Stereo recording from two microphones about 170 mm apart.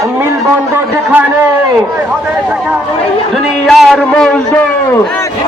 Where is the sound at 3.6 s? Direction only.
Centre (ahead or behind).